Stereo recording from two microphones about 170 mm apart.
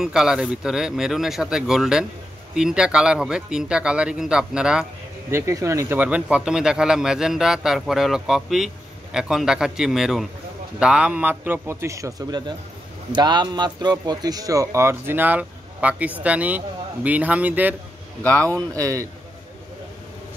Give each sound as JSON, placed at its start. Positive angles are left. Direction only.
{"t": 0.0, "sound": "speech", "side_deg": -5}
{"t": 5.3, "sound": "speech", "side_deg": -15}
{"t": 18.2, "sound": "speech", "side_deg": 10}
{"t": 18.8, "sound": "a man's voice", "side_deg": -20}